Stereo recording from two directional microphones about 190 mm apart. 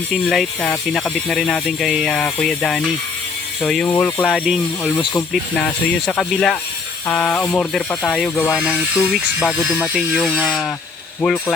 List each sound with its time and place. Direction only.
0.1 s speech: centre (ahead or behind)
11.2 s speech: 10° left (ahead or behind)